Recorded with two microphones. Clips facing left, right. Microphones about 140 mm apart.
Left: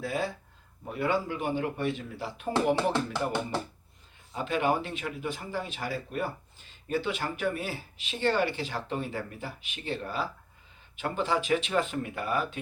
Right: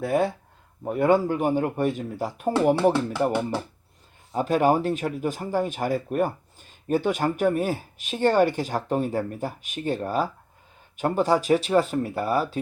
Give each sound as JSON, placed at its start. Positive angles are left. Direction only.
{"t": 0.0, "sound": "speech", "side_deg": -55}